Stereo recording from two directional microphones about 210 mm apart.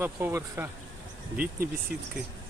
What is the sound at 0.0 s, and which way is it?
Speech, 10° right (ahead or behind).